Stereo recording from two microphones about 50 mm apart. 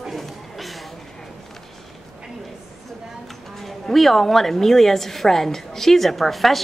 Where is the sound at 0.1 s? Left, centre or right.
Centre.